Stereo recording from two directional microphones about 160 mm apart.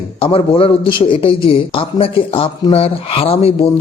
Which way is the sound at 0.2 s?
35° left (ahead or behind).